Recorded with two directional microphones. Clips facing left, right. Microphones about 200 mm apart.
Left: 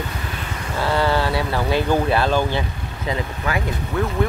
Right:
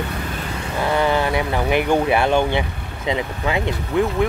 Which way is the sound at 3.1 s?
20° right (ahead or behind).